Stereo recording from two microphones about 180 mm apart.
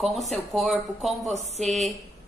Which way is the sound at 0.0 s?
Centre (ahead or behind).